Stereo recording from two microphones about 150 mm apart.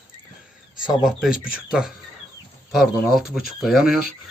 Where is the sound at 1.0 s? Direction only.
5° right (ahead or behind).